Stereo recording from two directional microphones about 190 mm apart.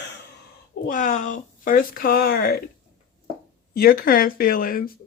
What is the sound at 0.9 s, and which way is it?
Speech, 40° left (ahead or behind).